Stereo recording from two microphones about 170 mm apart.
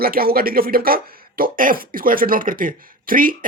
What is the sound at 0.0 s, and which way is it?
Speech, 60° right (ahead or behind).